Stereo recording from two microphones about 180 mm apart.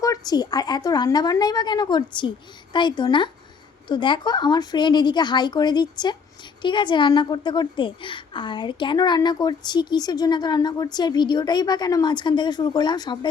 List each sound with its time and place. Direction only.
0.0 s a woman's voice: 20° left (ahead or behind)